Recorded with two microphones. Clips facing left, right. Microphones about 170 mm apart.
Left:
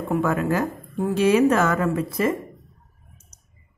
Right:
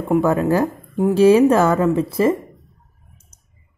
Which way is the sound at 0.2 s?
35° right (ahead or behind).